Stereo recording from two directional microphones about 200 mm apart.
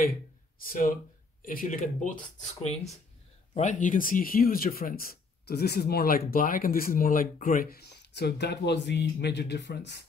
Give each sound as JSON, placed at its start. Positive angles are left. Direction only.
{"t": 0.7, "sound": "speech", "side_deg": 45}
{"t": 2.7, "sound": "speech", "side_deg": 0}
{"t": 3.5, "sound": "speech", "side_deg": 40}